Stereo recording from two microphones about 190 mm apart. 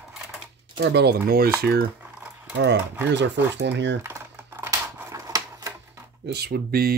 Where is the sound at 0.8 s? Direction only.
60° right (ahead or behind).